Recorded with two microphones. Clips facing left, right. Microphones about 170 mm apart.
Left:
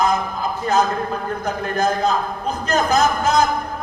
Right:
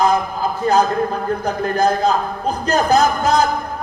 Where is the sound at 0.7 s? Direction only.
40° right (ahead or behind).